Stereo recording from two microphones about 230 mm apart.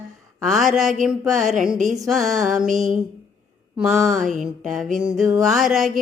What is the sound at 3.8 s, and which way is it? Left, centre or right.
Mantra, centre.